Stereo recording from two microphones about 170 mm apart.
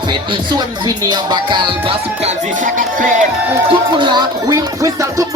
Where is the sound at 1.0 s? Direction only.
25° right (ahead or behind).